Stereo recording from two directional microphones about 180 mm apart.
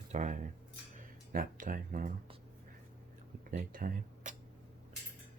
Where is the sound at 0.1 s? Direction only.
40° right (ahead or behind).